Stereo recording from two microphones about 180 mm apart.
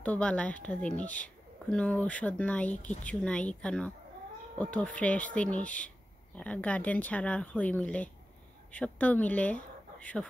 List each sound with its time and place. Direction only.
0.0 s a woman's voice: 5° left (ahead or behind)